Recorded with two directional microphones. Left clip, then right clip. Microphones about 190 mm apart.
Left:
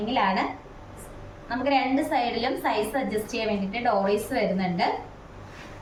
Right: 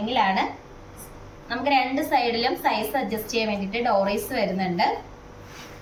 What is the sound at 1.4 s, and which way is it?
A woman's voice, 10° left (ahead or behind).